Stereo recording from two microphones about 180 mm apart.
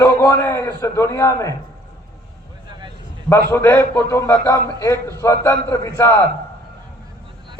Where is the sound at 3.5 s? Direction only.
15° left (ahead or behind).